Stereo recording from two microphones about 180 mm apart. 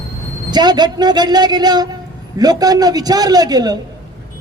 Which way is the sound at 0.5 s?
25° right (ahead or behind).